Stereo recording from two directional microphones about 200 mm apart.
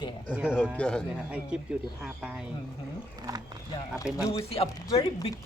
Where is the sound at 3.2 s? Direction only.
20° right (ahead or behind).